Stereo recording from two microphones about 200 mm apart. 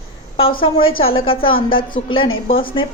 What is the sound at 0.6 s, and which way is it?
A woman's voice, 25° left (ahead or behind).